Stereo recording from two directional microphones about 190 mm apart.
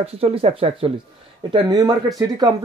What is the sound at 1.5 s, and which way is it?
Speech, 20° right (ahead or behind).